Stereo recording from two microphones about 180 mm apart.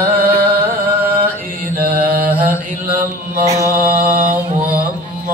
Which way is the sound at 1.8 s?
55° right (ahead or behind).